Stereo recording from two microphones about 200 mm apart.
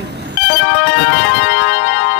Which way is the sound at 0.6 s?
65° left (ahead or behind).